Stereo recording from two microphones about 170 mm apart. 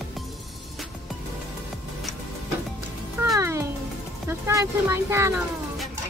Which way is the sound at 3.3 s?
15° right (ahead or behind).